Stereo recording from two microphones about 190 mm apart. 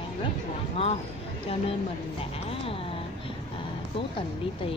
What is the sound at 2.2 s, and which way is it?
Speech, 30° left (ahead or behind).